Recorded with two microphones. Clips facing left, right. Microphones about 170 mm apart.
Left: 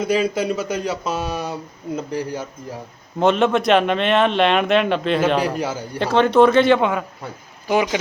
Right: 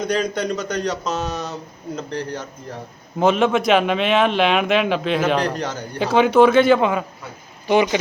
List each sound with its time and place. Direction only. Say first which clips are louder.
0.0 s speech: left 2 dB; 5° left (ahead or behind)
3.2 s a man's voice: even; centre (ahead or behind)
6.0 s a man's voice: even; 5° right (ahead or behind)